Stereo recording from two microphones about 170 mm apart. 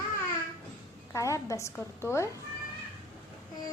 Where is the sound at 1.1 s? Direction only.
20° left (ahead or behind).